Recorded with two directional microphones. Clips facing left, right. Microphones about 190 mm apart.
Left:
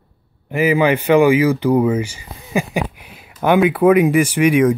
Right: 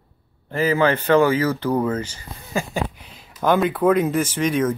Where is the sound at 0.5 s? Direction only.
15° left (ahead or behind).